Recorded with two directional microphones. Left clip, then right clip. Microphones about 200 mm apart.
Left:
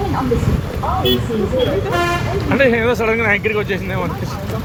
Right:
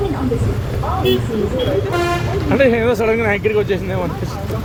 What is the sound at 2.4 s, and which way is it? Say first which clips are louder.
A man's voice: even; 30° right (ahead or behind).